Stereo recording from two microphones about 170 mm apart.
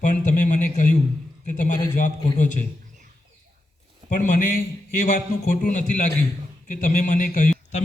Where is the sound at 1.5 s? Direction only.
45° left (ahead or behind).